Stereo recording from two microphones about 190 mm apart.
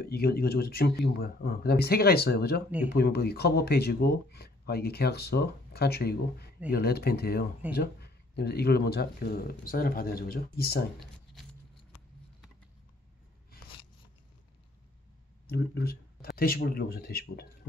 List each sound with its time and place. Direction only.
0.0 s speech: 55° left (ahead or behind)
15.4 s speech: 55° left (ahead or behind)